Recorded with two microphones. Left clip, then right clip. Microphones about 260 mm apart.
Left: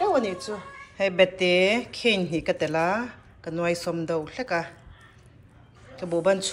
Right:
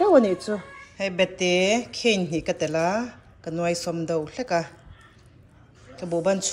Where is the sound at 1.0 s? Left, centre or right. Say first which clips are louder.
Left 3 dB; centre.